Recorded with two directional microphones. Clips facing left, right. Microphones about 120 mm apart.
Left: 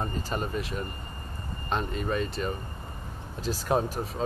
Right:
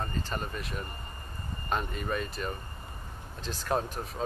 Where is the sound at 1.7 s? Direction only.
Centre (ahead or behind).